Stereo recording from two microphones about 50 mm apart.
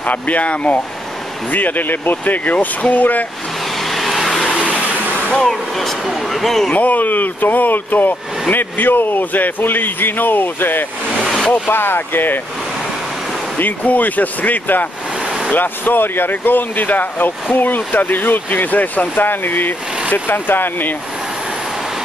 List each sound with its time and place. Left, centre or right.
0.0 s speech: left
3.8 s vehicle: centre
4.6 s vehicle: right
5.3 s speech: centre
5.8 s speech: centre
6.7 s speech: left
13.6 s speech: left
15.2 s vehicle: centre
15.5 s speech: left